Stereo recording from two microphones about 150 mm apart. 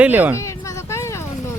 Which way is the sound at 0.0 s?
10° right (ahead or behind).